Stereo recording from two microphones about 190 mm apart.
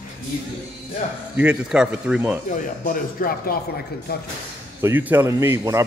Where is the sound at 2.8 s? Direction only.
50° left (ahead or behind).